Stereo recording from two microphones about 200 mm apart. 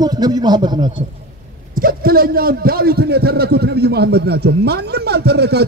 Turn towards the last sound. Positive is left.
turn(degrees=-55)  # may be behind; listen again after turning